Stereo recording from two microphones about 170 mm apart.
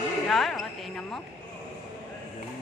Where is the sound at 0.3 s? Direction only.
Centre (ahead or behind).